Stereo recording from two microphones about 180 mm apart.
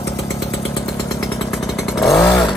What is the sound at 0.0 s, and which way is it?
Chainsaw, 15° left (ahead or behind).